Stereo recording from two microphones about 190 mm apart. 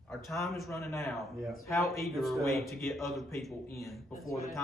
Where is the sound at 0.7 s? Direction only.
15° left (ahead or behind).